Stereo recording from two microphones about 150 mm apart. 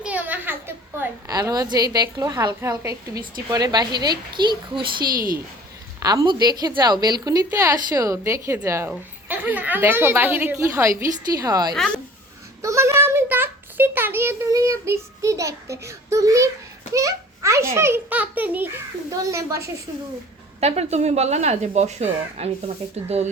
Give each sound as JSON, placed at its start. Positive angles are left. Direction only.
{"t": 0.0, "sound": "a sound", "side_deg": -10}
{"t": 1.3, "sound": "a woman's voice", "side_deg": -25}
{"t": 6.0, "sound": "a woman's voice", "side_deg": -25}
{"t": 20.6, "sound": "speech", "side_deg": -45}